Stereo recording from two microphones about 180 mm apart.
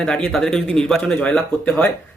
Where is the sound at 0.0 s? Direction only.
5° left (ahead or behind).